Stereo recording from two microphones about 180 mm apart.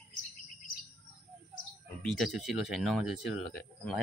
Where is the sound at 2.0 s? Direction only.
Centre (ahead or behind).